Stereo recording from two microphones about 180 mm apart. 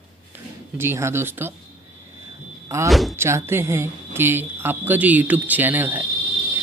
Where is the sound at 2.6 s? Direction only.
15° right (ahead or behind).